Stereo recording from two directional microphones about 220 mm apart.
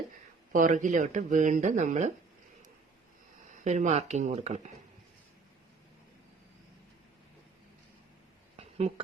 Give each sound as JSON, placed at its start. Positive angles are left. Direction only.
{"t": 0.5, "sound": "speech", "side_deg": -35}
{"t": 3.6, "sound": "speech", "side_deg": -35}